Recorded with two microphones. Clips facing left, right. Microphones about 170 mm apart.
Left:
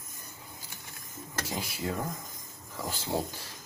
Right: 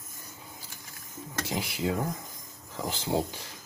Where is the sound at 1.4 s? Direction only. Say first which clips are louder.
Right 4 dB; 20° right (ahead or behind).